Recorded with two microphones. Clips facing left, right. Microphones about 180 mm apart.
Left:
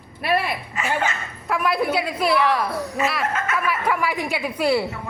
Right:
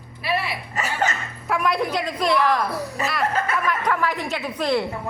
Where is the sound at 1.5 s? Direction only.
Centre (ahead or behind).